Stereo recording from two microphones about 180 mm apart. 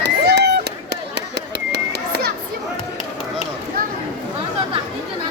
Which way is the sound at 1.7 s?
65° right (ahead or behind).